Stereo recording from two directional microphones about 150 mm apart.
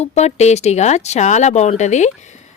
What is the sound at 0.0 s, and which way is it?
Speech, 45° left (ahead or behind).